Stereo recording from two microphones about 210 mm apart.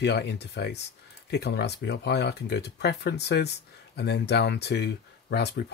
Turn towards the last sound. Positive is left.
turn(degrees=50)  # may be behind; listen again after turning